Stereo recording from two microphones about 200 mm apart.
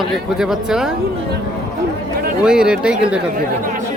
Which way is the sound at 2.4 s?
5° right (ahead or behind).